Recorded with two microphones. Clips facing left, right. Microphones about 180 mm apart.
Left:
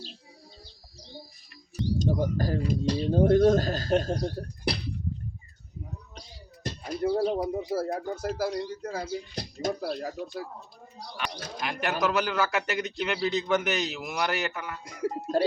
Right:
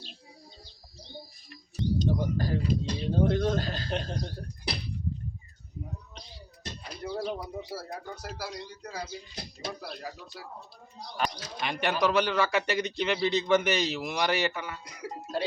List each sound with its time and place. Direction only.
2.0 s speech: 45° left (ahead or behind)
6.1 s a sound: 50° left (ahead or behind)
7.1 s speech: 35° left (ahead or behind)
7.4 s speech: 50° left (ahead or behind)
11.6 s a man's voice: centre (ahead or behind)
14.8 s speech: 50° left (ahead or behind)